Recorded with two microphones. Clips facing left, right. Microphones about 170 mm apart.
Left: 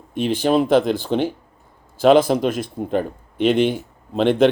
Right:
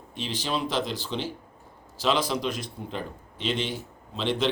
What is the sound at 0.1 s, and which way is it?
A man's voice, 55° left (ahead or behind).